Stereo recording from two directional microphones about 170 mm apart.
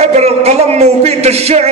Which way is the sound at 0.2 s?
40° right (ahead or behind).